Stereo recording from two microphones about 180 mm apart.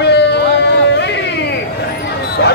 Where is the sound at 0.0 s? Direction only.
65° left (ahead or behind).